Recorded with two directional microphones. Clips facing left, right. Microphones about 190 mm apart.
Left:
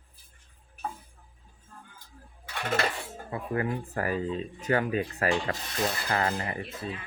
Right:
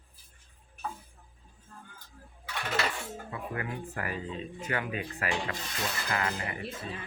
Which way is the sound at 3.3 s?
35° left (ahead or behind).